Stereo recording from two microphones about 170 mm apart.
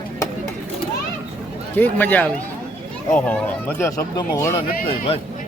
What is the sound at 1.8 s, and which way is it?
Speech, 10° left (ahead or behind).